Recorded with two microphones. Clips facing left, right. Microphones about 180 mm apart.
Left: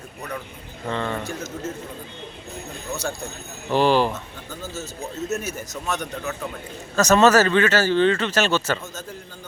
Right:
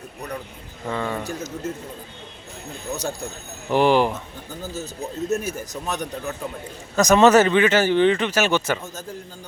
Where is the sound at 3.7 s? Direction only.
15° right (ahead or behind).